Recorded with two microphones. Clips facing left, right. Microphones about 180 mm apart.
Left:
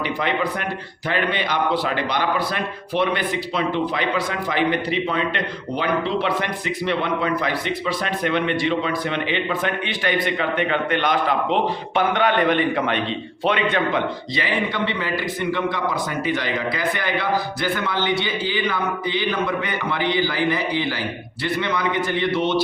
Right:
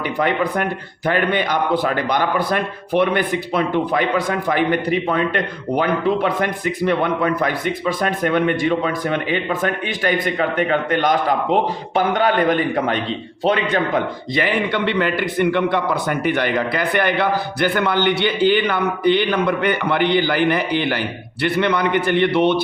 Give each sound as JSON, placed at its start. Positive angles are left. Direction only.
{"t": 0.2, "sound": "a man's voice", "side_deg": -50}
{"t": 14.3, "sound": "a man's voice", "side_deg": -60}